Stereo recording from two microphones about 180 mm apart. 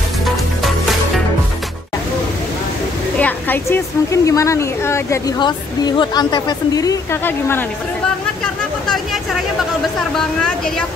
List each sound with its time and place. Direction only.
3.2 s a woman's voice: 10° left (ahead or behind)